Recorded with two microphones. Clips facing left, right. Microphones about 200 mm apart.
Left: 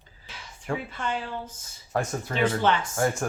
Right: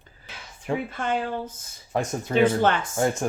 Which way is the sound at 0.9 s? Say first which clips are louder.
Right 5 dB; 50° right (ahead or behind).